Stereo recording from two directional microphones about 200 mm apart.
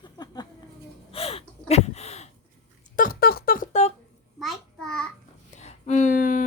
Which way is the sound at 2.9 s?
45° left (ahead or behind).